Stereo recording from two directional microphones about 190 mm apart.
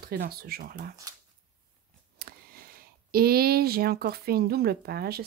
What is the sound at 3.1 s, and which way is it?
Speech, 55° right (ahead or behind).